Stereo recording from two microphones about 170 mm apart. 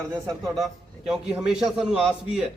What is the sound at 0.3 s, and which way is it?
A man's voice, centre (ahead or behind).